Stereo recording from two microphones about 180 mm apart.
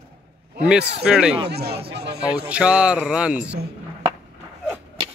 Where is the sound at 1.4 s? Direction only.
65° right (ahead or behind).